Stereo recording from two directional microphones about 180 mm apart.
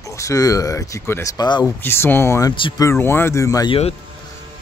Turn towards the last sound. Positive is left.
turn(degrees=20)  # may be behind; listen again after turning